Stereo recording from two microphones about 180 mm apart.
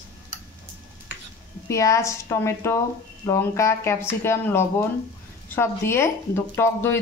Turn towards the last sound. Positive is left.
turn(degrees=15)  # may be behind; listen again after turning